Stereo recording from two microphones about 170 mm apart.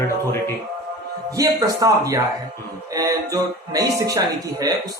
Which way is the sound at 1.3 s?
20° right (ahead or behind).